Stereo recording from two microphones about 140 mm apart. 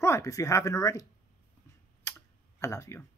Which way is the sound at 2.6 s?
20° left (ahead or behind).